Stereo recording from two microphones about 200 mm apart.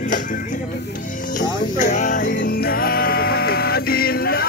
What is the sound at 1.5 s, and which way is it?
Music, 40° left (ahead or behind).